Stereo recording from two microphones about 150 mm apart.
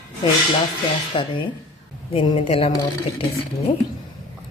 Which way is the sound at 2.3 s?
45° left (ahead or behind).